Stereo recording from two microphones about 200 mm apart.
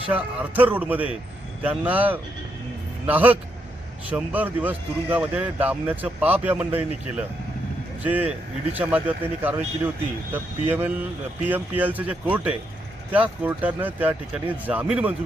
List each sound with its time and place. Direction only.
0.1 s speech: 5° right (ahead or behind)